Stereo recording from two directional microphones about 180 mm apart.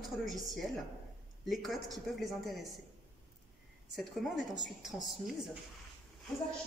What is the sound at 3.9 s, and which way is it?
A woman's voice, centre (ahead or behind).